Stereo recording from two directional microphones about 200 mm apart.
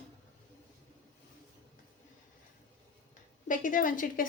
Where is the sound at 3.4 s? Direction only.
40° left (ahead or behind).